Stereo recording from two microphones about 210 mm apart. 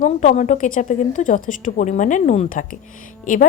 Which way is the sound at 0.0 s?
35° left (ahead or behind).